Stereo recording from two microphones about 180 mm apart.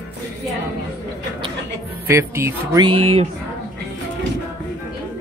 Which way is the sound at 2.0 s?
15° right (ahead or behind).